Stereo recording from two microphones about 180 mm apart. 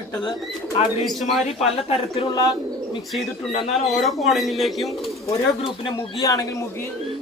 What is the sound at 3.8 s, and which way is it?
Speech, centre (ahead or behind).